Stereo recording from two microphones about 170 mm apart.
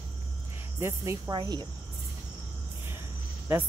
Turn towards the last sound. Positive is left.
turn(degrees=-10)  # may be behind; listen again after turning